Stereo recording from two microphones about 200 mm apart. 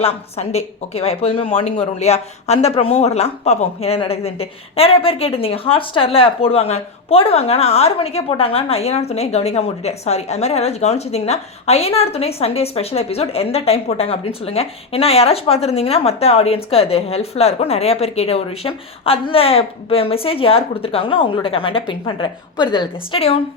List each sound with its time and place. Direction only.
0.0 s a woman's voice: 30° left (ahead or behind)